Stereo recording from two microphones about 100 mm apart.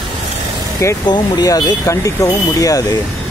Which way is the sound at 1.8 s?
30° left (ahead or behind).